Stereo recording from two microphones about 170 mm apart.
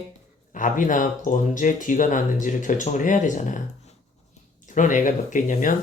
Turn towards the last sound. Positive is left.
turn(degrees=50)  # may be behind; listen again after turning